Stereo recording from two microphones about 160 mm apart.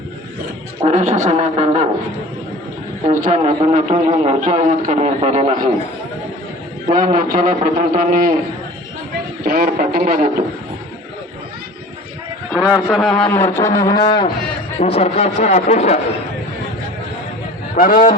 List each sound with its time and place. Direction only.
0.8 s a man's voice: 50° right (ahead or behind)
3.1 s a man's voice: 45° right (ahead or behind)
6.9 s a man's voice: 55° right (ahead or behind)
9.4 s speech: 70° right (ahead or behind)
12.5 s a man's voice: 10° right (ahead or behind)
12.9 s a man's voice: 5° left (ahead or behind); by 14.3 s 25° left (ahead or behind)
14.8 s speech: 40° left (ahead or behind)
17.7 s a man's voice: 60° left (ahead or behind)